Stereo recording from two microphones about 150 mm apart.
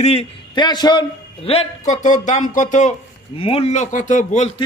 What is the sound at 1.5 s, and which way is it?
Speech, 55° left (ahead or behind).